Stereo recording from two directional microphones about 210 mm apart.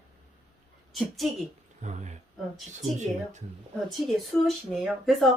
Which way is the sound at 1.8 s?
35° right (ahead or behind).